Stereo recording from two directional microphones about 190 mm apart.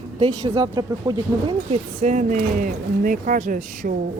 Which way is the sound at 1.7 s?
40° right (ahead or behind).